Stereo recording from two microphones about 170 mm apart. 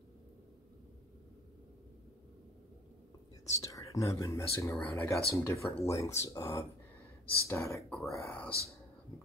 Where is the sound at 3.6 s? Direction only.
20° left (ahead or behind).